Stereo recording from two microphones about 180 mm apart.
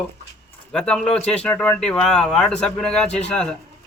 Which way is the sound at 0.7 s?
5° left (ahead or behind).